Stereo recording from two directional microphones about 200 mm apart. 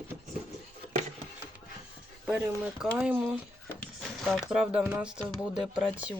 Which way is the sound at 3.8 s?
Centre (ahead or behind).